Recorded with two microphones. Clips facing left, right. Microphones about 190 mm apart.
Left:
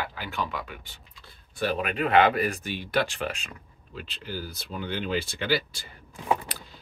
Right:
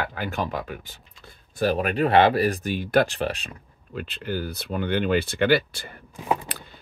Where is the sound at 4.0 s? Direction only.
55° right (ahead or behind).